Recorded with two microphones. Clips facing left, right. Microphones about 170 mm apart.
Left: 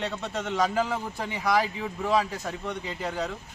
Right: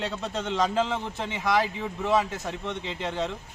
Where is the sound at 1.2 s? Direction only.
20° right (ahead or behind).